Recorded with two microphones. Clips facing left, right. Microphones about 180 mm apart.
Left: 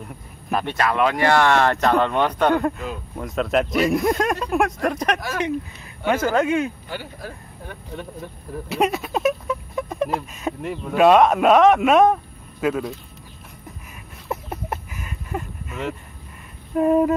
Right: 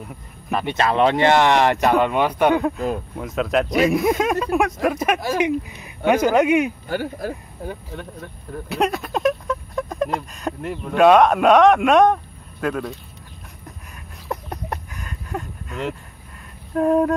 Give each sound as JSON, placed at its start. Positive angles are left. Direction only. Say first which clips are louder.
{"t": 0.7, "sound": "speech", "louder": "right 3 dB", "side_deg": -25}
{"t": 6.9, "sound": "speech", "louder": "right 8 dB", "side_deg": -45}
{"t": 7.9, "sound": "speech", "louder": "left 1 dB", "side_deg": 0}
{"t": 14.3, "sound": "a sound", "louder": "even", "side_deg": 5}
{"t": 16.7, "sound": "speech", "louder": "even", "side_deg": 5}